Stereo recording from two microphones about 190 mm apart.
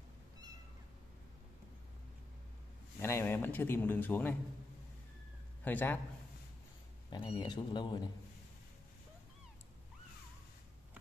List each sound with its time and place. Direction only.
3.0 s a man's voice: 15° left (ahead or behind)
5.6 s a man's voice: 10° left (ahead or behind)
7.1 s a man's voice: 25° left (ahead or behind)